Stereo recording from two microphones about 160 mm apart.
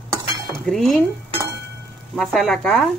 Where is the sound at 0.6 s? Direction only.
Centre (ahead or behind).